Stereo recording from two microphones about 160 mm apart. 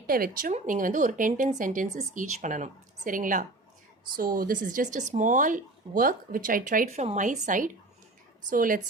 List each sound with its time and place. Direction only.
0.1 s speech: 65° right (ahead or behind)